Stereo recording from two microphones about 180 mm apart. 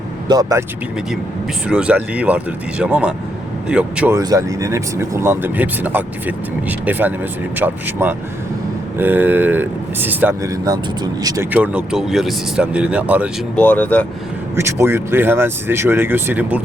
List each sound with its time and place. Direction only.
0.3 s speech: 20° right (ahead or behind)
1.6 s speech: 5° right (ahead or behind)
4.2 s speech: 20° right (ahead or behind)
11.5 s speech: 5° right (ahead or behind)
13.6 s speech: 10° left (ahead or behind)
14.5 s speech: 15° right (ahead or behind)